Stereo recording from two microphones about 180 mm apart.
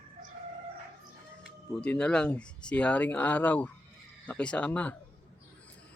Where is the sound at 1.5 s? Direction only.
5° left (ahead or behind).